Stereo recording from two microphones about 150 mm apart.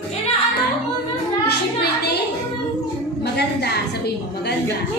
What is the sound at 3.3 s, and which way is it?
Speech, 90° left.